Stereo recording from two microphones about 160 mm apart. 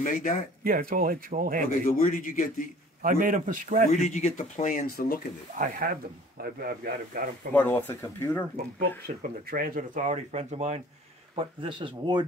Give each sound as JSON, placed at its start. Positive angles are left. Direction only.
{"t": 0.0, "sound": "speech", "side_deg": 50}
{"t": 0.7, "sound": "speech", "side_deg": -65}
{"t": 1.9, "sound": "speech", "side_deg": 55}
{"t": 3.0, "sound": "speech", "side_deg": -60}
{"t": 4.0, "sound": "speech", "side_deg": 45}
{"t": 5.6, "sound": "speech", "side_deg": -60}
{"t": 7.5, "sound": "speech", "side_deg": 10}
{"t": 8.7, "sound": "speech", "side_deg": -70}
{"t": 11.3, "sound": "speech", "side_deg": -30}